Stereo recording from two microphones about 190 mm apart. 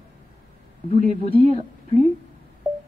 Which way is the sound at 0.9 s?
50° right (ahead or behind).